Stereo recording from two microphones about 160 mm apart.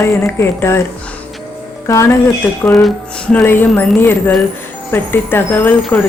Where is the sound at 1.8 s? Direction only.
20° left (ahead or behind).